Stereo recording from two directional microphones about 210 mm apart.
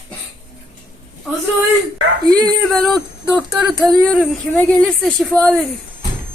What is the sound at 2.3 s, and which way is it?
Speech, 20° right (ahead or behind).